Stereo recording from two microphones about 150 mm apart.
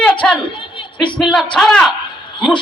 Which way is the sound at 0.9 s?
30° left (ahead or behind).